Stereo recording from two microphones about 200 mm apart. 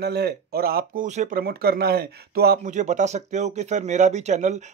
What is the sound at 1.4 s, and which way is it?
Speech, 50° right (ahead or behind).